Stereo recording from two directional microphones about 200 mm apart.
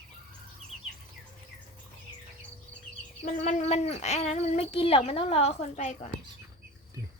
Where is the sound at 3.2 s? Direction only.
35° left (ahead or behind).